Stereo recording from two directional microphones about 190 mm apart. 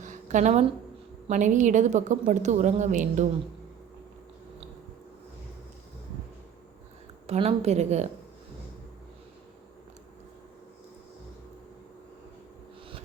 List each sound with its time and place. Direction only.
0.0 s a sound: 40° right (ahead or behind)
1.3 s a woman's voice: 40° right (ahead or behind)
7.3 s a woman's voice: 35° right (ahead or behind)